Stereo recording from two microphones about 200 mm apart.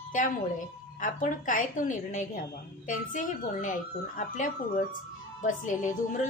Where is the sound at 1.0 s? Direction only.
40° left (ahead or behind).